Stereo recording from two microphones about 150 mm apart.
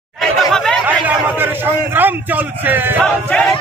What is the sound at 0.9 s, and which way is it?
A man's voice, 10° right (ahead or behind).